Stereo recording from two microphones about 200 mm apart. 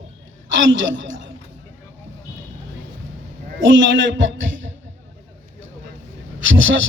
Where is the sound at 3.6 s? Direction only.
70° right (ahead or behind).